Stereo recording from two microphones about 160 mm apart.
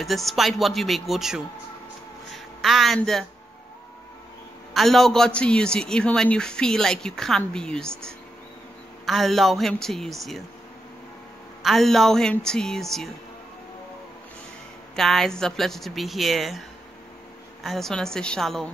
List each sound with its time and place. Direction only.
0.0 s a man's voice: centre (ahead or behind)
4.7 s a man's voice: centre (ahead or behind)
11.6 s a man's voice: centre (ahead or behind)
15.0 s a man's voice: centre (ahead or behind)
17.6 s a man's voice: centre (ahead or behind)